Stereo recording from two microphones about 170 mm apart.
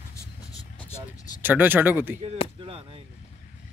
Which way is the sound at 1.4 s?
10° right (ahead or behind).